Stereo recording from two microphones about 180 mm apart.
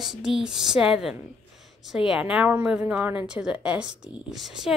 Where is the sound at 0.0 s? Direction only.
5° right (ahead or behind).